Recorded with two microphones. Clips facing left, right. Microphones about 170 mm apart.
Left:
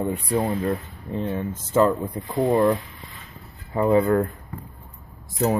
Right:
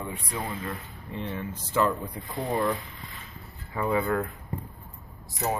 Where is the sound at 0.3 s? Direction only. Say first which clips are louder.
Left 11 dB; 40° left (ahead or behind).